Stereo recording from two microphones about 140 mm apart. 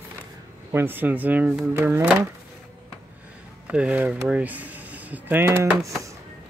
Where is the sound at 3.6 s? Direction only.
10° right (ahead or behind).